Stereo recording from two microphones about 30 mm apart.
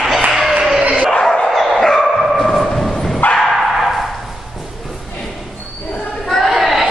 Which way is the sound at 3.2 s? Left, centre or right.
Left.